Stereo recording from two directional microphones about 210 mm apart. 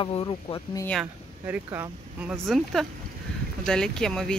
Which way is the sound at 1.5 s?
10° right (ahead or behind).